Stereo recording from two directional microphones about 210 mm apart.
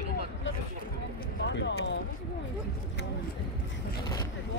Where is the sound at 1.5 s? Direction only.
60° left (ahead or behind).